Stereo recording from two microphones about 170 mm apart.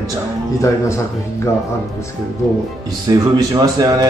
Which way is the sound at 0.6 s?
15° left (ahead or behind).